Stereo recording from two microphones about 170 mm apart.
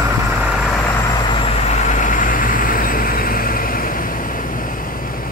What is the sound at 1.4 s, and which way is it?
Vehicle, 45° left (ahead or behind).